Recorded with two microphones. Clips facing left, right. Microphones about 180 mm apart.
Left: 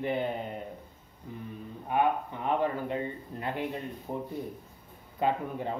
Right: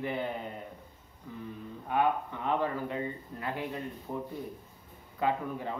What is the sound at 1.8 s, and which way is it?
Speech, 15° left (ahead or behind).